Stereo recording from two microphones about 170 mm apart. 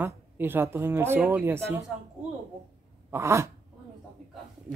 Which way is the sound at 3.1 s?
15° right (ahead or behind).